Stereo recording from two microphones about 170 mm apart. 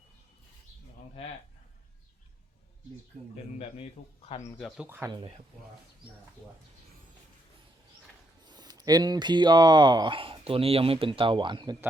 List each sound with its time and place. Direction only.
4.0 s speech: 40° left (ahead or behind)
4.8 s speech: 15° right (ahead or behind)
8.4 s speech: 25° right (ahead or behind)